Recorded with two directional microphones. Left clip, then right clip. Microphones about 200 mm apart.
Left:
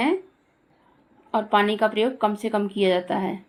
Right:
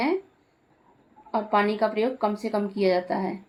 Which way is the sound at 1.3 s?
30° left (ahead or behind).